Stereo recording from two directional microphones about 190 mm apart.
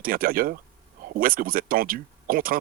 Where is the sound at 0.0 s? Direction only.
50° right (ahead or behind).